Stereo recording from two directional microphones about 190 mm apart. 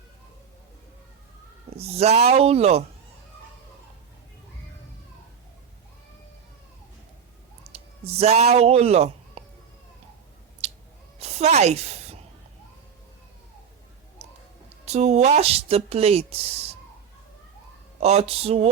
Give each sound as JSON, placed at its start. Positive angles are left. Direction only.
{"t": 1.7, "sound": "speech", "side_deg": -35}
{"t": 7.7, "sound": "a man's voice", "side_deg": -30}
{"t": 10.6, "sound": "a sound", "side_deg": -35}
{"t": 14.8, "sound": "speech", "side_deg": -35}
{"t": 18.0, "sound": "speech", "side_deg": -35}